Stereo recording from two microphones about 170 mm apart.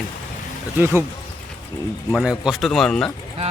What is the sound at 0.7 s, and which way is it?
Speech, 10° right (ahead or behind).